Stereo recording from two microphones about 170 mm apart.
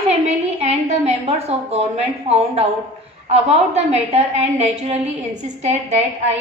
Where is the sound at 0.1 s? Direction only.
40° right (ahead or behind).